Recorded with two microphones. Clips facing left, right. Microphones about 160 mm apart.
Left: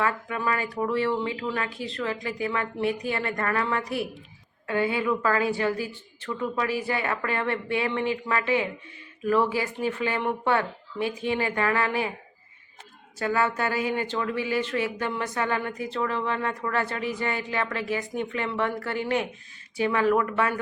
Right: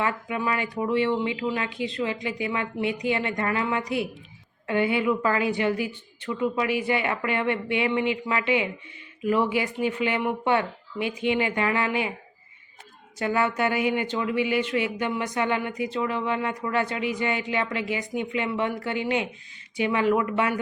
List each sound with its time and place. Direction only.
0.0 s a woman's voice: 15° right (ahead or behind)
13.1 s speech: 20° right (ahead or behind)